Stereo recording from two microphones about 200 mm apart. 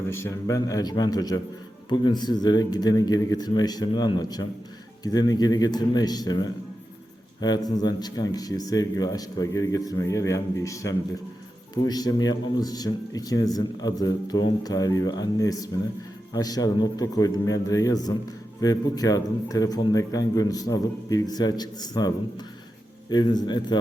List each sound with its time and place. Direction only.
0.1 s a man's voice: 15° left (ahead or behind)